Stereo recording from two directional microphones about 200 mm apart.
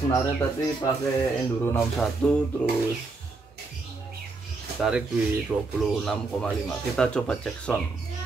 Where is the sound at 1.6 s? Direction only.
10° left (ahead or behind).